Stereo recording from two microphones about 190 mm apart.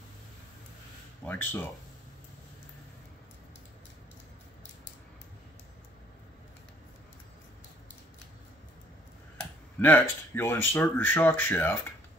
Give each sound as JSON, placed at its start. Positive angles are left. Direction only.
{"t": 1.2, "sound": "speech", "side_deg": 10}
{"t": 9.8, "sound": "speech", "side_deg": 10}